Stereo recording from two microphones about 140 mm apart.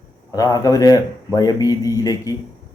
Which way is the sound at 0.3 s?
25° left (ahead or behind).